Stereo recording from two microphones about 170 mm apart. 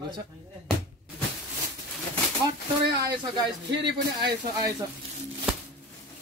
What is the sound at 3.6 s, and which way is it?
Speech, 85° right.